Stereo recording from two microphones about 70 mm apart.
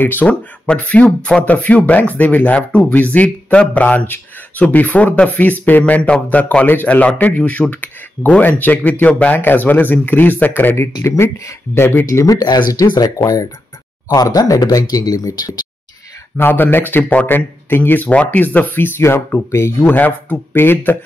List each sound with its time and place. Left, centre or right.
0.0 s speech: left
12.3 s speech: left
13.2 s speech: left
16.3 s speech: left